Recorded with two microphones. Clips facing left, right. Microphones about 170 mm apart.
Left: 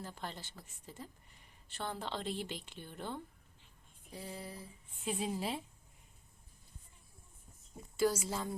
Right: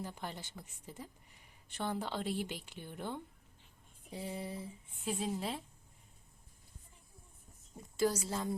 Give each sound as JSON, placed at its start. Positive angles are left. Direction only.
{"t": 0.0, "sound": "a woman's voice", "side_deg": -15}
{"t": 4.1, "sound": "a sound", "side_deg": -25}
{"t": 5.0, "sound": "a woman's voice", "side_deg": 0}
{"t": 8.1, "sound": "a woman's voice", "side_deg": 5}